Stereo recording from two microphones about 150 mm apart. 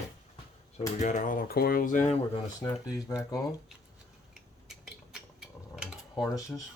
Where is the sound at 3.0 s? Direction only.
20° left (ahead or behind).